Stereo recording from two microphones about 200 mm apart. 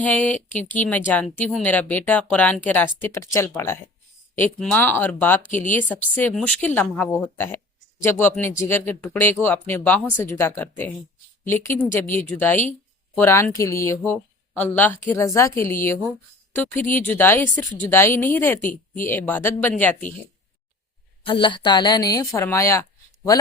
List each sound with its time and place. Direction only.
0.0 s speech: 5° left (ahead or behind)
5.5 s speech: 40° left (ahead or behind)
5.9 s speech: 10° left (ahead or behind)
21.2 s a woman's voice: 25° left (ahead or behind)